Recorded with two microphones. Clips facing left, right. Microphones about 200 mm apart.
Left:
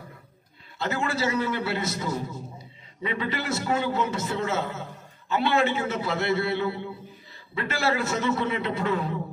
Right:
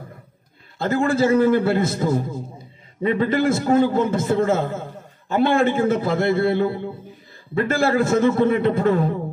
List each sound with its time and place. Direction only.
0.7 s a man's voice: 50° right (ahead or behind)